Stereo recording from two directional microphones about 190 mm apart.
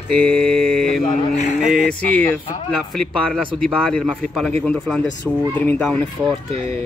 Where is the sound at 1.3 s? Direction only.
35° left (ahead or behind).